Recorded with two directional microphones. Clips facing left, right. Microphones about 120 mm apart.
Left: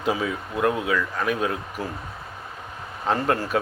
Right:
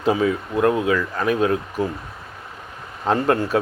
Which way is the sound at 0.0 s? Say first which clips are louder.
Right 6 dB; 30° right (ahead or behind).